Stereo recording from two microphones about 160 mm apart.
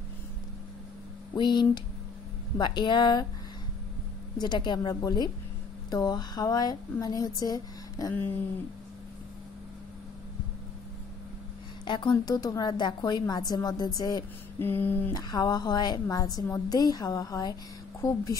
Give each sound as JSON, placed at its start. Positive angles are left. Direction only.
{"t": 1.3, "sound": "speech", "side_deg": 30}
{"t": 4.4, "sound": "speech", "side_deg": 25}
{"t": 11.8, "sound": "speech", "side_deg": 30}
{"t": 14.6, "sound": "a sound", "side_deg": 10}
{"t": 15.1, "sound": "speech", "side_deg": 25}